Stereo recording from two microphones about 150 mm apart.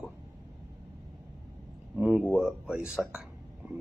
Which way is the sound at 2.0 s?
15° right (ahead or behind).